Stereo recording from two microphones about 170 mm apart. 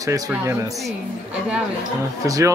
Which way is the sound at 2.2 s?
20° right (ahead or behind).